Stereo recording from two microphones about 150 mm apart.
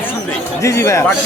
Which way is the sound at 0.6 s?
20° left (ahead or behind).